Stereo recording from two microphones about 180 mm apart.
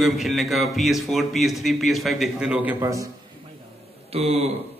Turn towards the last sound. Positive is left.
turn(degrees=-35)  # may be behind; listen again after turning